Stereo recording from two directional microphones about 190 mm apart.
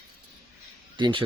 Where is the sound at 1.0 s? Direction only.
25° right (ahead or behind).